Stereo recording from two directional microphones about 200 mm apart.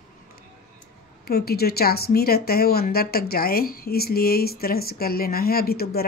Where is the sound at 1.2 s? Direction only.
50° left (ahead or behind).